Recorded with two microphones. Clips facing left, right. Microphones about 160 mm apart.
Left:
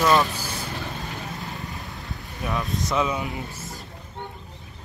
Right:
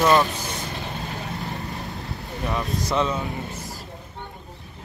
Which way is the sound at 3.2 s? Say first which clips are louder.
Right 1 dB; 20° left (ahead or behind).